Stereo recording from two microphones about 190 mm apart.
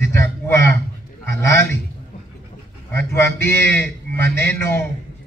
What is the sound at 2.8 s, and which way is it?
Speech, 15° left (ahead or behind).